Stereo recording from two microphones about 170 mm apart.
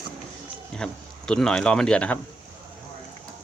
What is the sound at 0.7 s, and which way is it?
Speech, 5° left (ahead or behind).